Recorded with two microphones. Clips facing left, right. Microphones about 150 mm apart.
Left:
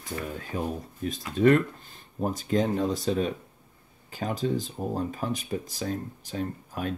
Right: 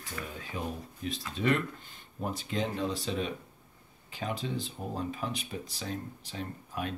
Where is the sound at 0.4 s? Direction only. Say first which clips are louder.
Left 6 dB; 45° left (ahead or behind).